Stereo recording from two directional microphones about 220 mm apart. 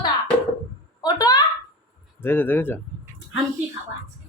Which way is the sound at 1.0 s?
20° left (ahead or behind).